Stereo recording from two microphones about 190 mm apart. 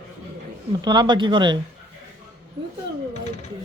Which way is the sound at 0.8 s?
20° right (ahead or behind).